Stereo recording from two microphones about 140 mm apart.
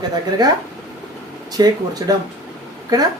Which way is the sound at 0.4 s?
30° right (ahead or behind).